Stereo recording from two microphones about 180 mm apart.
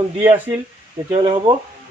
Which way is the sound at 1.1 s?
30° right (ahead or behind).